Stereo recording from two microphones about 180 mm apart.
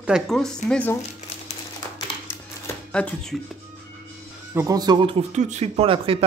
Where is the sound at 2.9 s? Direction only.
5° left (ahead or behind).